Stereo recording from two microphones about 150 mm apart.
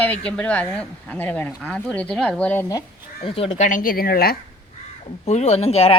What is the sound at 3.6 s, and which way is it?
Speech, 60° left (ahead or behind).